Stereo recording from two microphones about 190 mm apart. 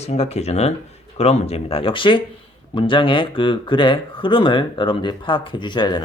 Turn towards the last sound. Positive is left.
turn(degrees=25)  # may be behind; listen again after turning